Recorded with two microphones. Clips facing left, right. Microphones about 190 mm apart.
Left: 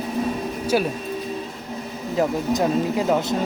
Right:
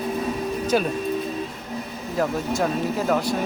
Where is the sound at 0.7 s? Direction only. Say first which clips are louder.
Left 1 dB; 10° left (ahead or behind).